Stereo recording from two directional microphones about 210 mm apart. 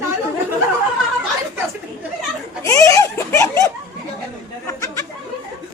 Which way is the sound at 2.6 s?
15° left (ahead or behind).